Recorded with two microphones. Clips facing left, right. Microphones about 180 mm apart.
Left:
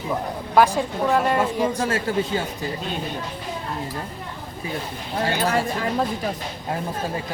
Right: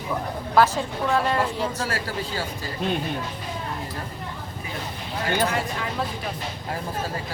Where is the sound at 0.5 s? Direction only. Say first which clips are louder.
Left 2 dB; 15° left (ahead or behind).